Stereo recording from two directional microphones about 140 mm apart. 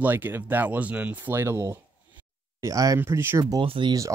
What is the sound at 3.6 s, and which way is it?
Speech, 35° right (ahead or behind).